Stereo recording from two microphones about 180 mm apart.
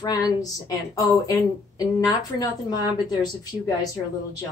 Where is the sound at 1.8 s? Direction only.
20° left (ahead or behind).